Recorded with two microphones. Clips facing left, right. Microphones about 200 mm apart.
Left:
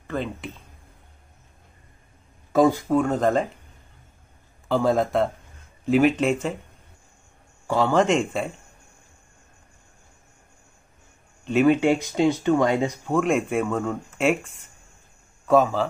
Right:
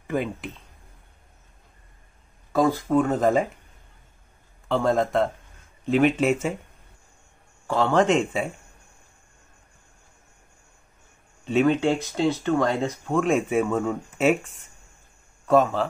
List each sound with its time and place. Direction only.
0.0 s speech: 15° right (ahead or behind)
2.5 s speech: 15° left (ahead or behind)
2.9 s speech: centre (ahead or behind)
4.6 s speech: centre (ahead or behind)
7.6 s speech: 5° left (ahead or behind)
11.4 s speech: 5° left (ahead or behind)
13.2 s speech: centre (ahead or behind)